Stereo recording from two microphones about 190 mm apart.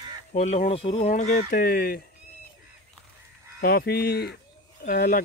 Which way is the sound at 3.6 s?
55° left (ahead or behind).